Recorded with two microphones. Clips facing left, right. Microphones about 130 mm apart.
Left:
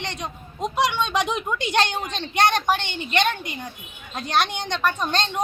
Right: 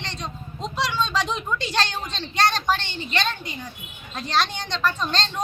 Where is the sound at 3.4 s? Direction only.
55° left (ahead or behind).